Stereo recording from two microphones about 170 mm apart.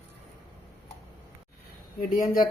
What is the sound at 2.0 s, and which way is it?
Speech, 55° left (ahead or behind).